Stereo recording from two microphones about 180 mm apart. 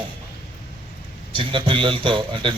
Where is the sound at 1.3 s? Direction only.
30° right (ahead or behind).